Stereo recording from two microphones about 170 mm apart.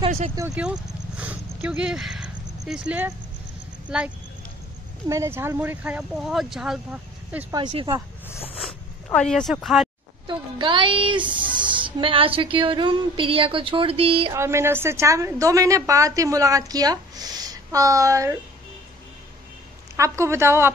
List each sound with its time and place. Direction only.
0.6 s a sound: 5° right (ahead or behind)
3.8 s speech: 10° right (ahead or behind)
8.5 s zipper: centre (ahead or behind)
10.2 s speech: 25° right (ahead or behind)
14.3 s speech: 15° right (ahead or behind)
20.0 s speech: 15° right (ahead or behind)